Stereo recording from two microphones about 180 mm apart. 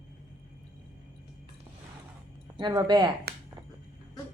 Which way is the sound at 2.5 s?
25° right (ahead or behind).